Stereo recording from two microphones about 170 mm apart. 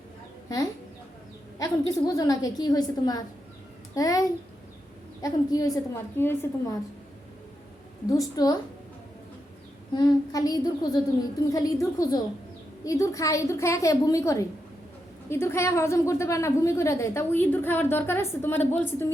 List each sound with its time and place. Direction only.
1.5 s a woman's voice: 20° left (ahead or behind)
5.2 s a woman's voice: 20° left (ahead or behind)
8.1 s a woman's voice: 20° left (ahead or behind)
9.9 s a woman's voice: 25° left (ahead or behind)